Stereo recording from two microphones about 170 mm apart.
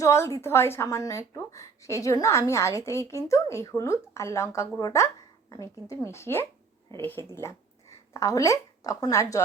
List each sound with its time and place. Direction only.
0.0 s a woman's voice: 15° left (ahead or behind)